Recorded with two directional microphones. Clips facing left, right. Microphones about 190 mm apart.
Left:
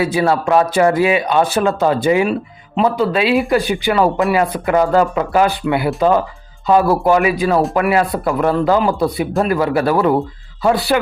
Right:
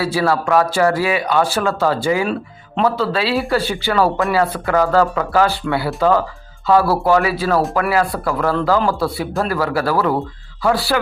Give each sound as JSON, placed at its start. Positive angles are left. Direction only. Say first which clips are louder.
{"t": 0.0, "sound": "speech", "louder": "left 2 dB", "side_deg": 20}